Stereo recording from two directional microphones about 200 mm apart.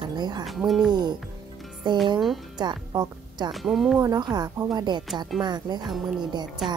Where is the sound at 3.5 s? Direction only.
Centre (ahead or behind).